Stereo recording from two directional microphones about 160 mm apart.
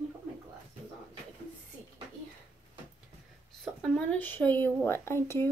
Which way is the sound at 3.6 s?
5° left (ahead or behind).